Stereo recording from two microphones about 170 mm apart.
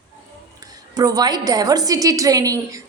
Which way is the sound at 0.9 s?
20° right (ahead or behind).